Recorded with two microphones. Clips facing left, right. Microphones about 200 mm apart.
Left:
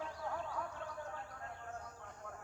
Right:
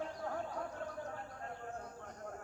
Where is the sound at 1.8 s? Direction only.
45° right (ahead or behind).